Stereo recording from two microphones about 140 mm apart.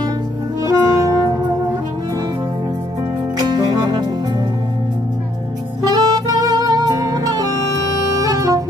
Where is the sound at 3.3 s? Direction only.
30° right (ahead or behind).